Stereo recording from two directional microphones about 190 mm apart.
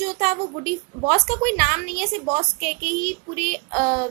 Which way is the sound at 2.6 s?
45° right (ahead or behind).